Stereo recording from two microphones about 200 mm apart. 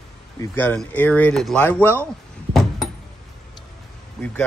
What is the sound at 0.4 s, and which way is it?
Speech, 10° left (ahead or behind).